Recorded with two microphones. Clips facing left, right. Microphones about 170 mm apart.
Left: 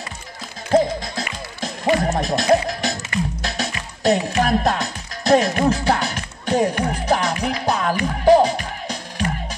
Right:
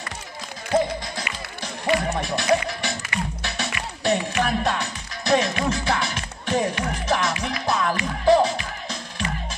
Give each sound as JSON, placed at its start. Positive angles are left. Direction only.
{"t": 1.6, "sound": "music", "side_deg": 40}